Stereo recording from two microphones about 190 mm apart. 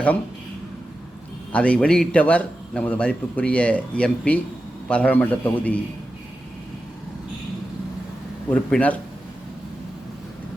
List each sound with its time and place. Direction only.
1.5 s a man's voice: 5° left (ahead or behind)
8.4 s a man's voice: 5° left (ahead or behind)